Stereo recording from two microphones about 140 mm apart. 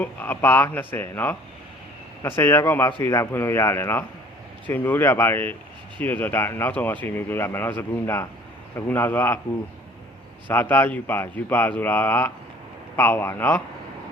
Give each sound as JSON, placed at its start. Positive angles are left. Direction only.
{"t": 0.0, "sound": "speech", "side_deg": 15}
{"t": 10.5, "sound": "speech", "side_deg": 15}